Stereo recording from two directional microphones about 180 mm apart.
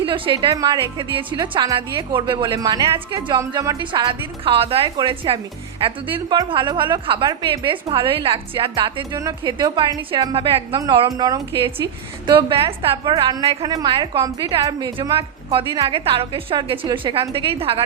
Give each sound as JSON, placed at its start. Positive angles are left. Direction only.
{"t": 0.0, "sound": "a woman's voice", "side_deg": -30}